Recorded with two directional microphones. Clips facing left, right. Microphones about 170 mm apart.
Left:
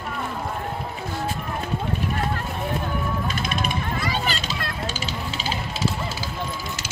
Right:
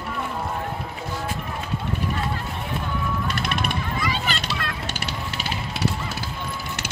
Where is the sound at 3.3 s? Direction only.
65° right (ahead or behind).